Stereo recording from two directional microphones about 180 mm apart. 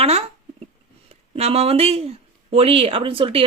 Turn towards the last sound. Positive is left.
turn(degrees=-30)  # may be behind; listen again after turning